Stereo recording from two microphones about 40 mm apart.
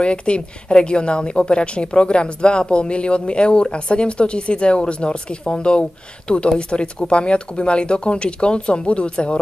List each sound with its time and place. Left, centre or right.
0.0 s speech: left